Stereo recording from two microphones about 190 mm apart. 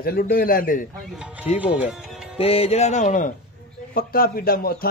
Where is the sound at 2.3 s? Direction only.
30° left (ahead or behind).